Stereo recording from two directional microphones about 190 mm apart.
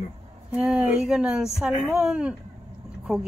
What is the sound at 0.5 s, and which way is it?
A woman's voice, 10° right (ahead or behind).